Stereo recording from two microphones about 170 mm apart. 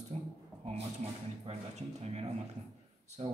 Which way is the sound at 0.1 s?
40° right (ahead or behind).